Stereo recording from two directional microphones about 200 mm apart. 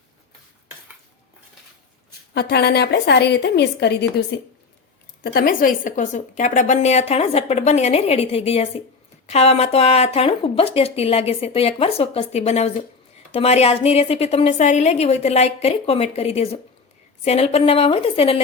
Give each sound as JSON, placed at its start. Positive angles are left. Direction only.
{"t": 2.3, "sound": "a woman's voice", "side_deg": 55}